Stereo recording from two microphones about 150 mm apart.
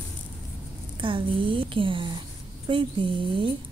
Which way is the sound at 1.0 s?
35° right (ahead or behind).